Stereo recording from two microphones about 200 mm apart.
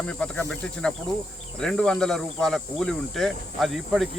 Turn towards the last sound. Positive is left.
turn(degrees=0)  # may be behind; listen again after turning